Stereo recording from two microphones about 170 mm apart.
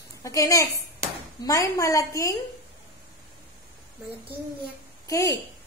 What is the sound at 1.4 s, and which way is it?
Speech, 20° left (ahead or behind).